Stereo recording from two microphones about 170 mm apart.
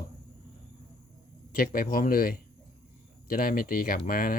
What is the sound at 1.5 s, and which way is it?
Speech, 60° left (ahead or behind).